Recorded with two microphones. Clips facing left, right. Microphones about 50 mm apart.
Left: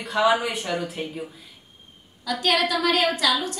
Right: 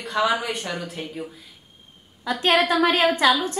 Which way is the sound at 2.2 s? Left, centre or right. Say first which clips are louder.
Right 3 dB; right.